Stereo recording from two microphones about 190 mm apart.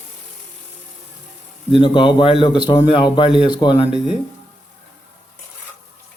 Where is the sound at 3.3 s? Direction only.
5° right (ahead or behind).